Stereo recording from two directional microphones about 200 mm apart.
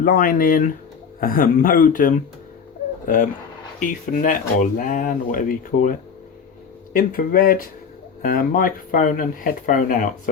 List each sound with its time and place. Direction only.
0.0 s speech: 45° left (ahead or behind)
3.8 s speech: 45° left (ahead or behind)
6.9 s speech: 45° left (ahead or behind)